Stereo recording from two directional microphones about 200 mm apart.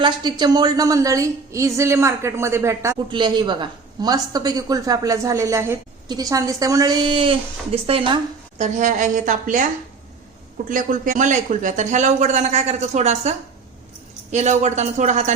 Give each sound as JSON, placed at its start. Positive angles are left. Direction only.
{"t": 0.0, "sound": "a woman's voice", "side_deg": -20}
{"t": 8.6, "sound": "a man's voice", "side_deg": -35}
{"t": 10.7, "sound": "a man's voice", "side_deg": -40}